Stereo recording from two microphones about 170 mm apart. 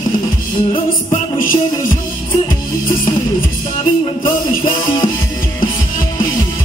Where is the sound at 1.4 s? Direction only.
55° left (ahead or behind).